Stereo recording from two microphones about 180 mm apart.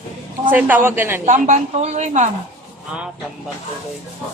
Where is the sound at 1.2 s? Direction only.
45° right (ahead or behind).